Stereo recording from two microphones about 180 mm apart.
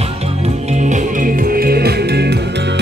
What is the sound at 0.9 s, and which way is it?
Music, 55° right (ahead or behind).